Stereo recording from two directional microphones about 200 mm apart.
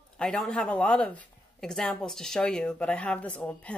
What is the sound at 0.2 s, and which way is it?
Speech, 5° left (ahead or behind).